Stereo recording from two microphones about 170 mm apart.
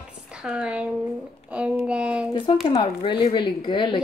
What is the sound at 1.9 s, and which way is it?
Speech, 5° right (ahead or behind).